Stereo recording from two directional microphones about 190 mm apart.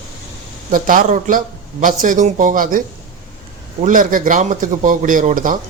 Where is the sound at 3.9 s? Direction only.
45° right (ahead or behind).